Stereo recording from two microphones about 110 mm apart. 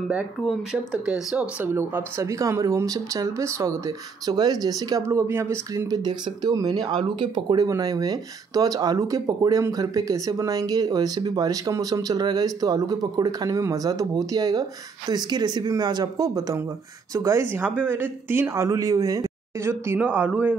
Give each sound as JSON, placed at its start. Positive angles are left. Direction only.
{"t": 0.7, "sound": "speech", "side_deg": -5}
{"t": 1.7, "sound": "speech", "side_deg": -20}
{"t": 5.0, "sound": "speech", "side_deg": -25}
{"t": 5.9, "sound": "speech", "side_deg": -40}